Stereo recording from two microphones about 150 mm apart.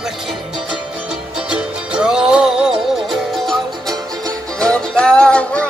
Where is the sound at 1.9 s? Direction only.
5° right (ahead or behind).